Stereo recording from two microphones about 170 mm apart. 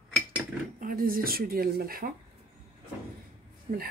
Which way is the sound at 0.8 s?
55° right (ahead or behind).